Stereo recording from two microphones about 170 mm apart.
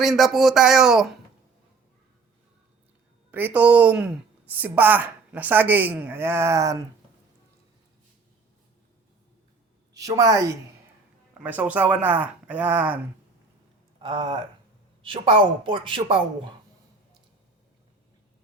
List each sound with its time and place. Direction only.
0.0 s speech: centre (ahead or behind)
3.3 s a woman's voice: 10° right (ahead or behind)
9.9 s a woman's voice: 20° right (ahead or behind)
11.4 s a woman's voice: 10° right (ahead or behind)
14.0 s speech: 30° right (ahead or behind)